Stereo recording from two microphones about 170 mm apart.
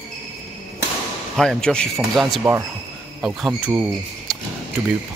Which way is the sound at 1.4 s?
5° left (ahead or behind).